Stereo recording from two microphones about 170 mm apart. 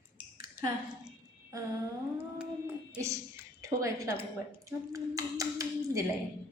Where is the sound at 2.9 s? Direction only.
20° right (ahead or behind).